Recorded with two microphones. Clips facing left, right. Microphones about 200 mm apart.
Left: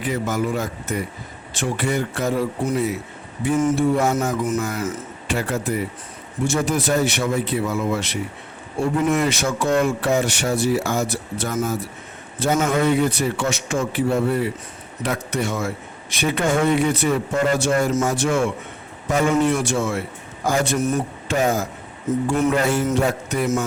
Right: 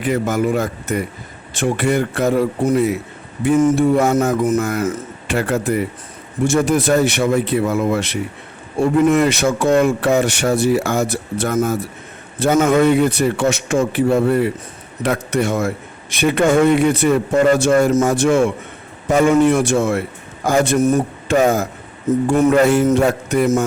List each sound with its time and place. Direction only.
0.0 s a man's voice: 60° right (ahead or behind); by 21.3 s 40° right (ahead or behind)
21.3 s speech: 55° right (ahead or behind)